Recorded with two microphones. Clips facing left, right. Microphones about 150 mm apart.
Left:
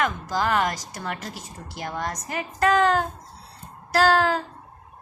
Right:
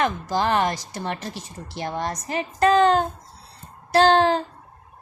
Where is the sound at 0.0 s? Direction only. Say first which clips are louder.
Right 2 dB; 25° right (ahead or behind).